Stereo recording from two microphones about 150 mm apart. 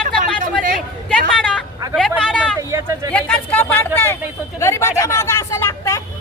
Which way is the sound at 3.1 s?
10° left (ahead or behind).